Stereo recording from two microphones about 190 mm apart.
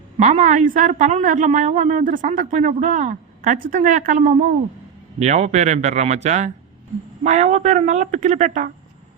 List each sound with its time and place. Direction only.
0.2 s a woman's voice: 40° right (ahead or behind)